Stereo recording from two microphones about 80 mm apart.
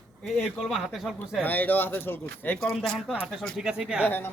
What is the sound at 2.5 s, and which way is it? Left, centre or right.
Speech, centre.